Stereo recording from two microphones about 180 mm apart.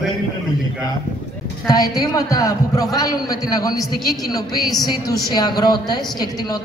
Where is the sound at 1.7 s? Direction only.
20° left (ahead or behind).